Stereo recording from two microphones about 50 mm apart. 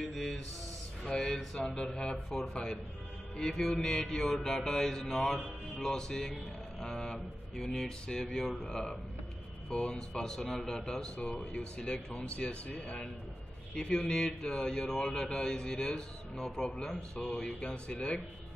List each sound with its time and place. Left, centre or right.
0.1 s a sound: centre
1.0 s speech: centre
11.1 s speech: left